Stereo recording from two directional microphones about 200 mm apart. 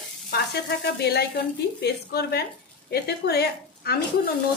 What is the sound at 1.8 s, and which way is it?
A woman's voice, 55° left (ahead or behind).